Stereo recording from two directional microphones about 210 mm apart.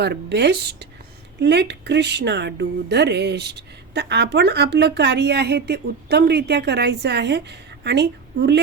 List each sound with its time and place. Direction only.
0.0 s speech: 50° right (ahead or behind)